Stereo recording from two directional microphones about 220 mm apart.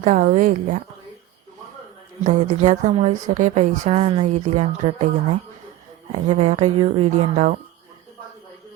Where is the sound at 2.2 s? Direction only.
30° right (ahead or behind).